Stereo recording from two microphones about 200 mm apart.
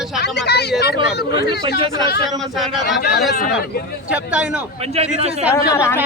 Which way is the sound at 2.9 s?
55° left (ahead or behind).